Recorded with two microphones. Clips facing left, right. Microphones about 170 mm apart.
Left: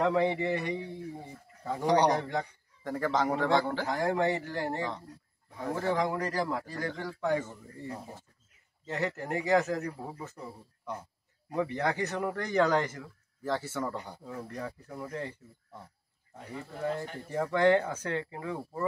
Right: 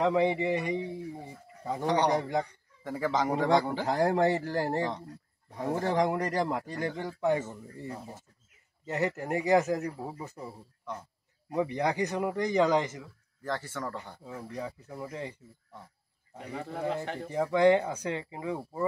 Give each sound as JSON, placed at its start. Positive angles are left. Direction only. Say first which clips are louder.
{"t": 0.0, "sound": "speech", "louder": "right 1 dB", "side_deg": -10}
{"t": 1.8, "sound": "a man's voice", "louder": "left 2 dB", "side_deg": 10}
{"t": 2.1, "sound": "speech", "louder": "right 3 dB", "side_deg": -15}
{"t": 2.8, "sound": "speech", "louder": "even", "side_deg": -5}
{"t": 3.8, "sound": "a man's voice", "louder": "right 3 dB", "side_deg": -30}
{"t": 11.5, "sound": "speech", "louder": "right 2 dB", "side_deg": -10}
{"t": 13.4, "sound": "a man's voice", "louder": "left 2 dB", "side_deg": 5}
{"t": 14.2, "sound": "speech", "louder": "right 3 dB", "side_deg": -10}
{"t": 16.5, "sound": "speech", "louder": "right 1 dB", "side_deg": -75}
{"t": 17.3, "sound": "speech", "louder": "right 2 dB", "side_deg": -10}